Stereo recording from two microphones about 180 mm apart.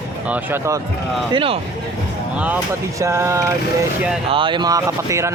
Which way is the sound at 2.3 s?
10° right (ahead or behind).